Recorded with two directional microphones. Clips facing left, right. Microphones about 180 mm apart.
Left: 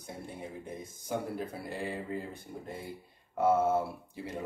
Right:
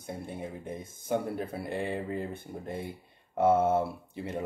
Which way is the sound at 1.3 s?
25° right (ahead or behind).